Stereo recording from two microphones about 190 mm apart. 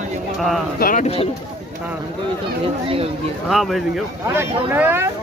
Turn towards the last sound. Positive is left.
turn(degrees=-10)  # may be behind; listen again after turning